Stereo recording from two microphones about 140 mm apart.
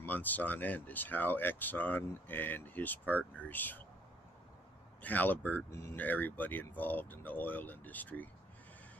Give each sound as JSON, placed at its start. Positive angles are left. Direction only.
{"t": 0.0, "sound": "speech", "side_deg": 10}
{"t": 5.0, "sound": "speech", "side_deg": 10}